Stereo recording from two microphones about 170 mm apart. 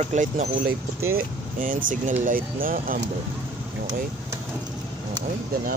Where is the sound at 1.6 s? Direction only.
45° right (ahead or behind).